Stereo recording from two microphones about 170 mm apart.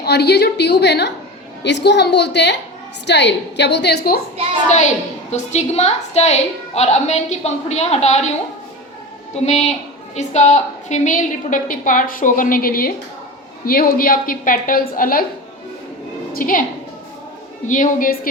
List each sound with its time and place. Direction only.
0.0 s a woman's voice: 75° left (ahead or behind)
1.6 s a woman's voice: 90° left; by 4.2 s 70° left (ahead or behind)
5.3 s a woman's voice: 40° left (ahead or behind)
9.3 s a woman's voice: 40° left (ahead or behind); by 15.2 s 55° left (ahead or behind)
16.3 s a woman's voice: 55° left (ahead or behind)
17.7 s a woman's voice: 50° left (ahead or behind)